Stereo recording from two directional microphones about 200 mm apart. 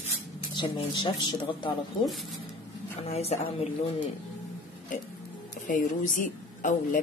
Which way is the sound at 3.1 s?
30° left (ahead or behind).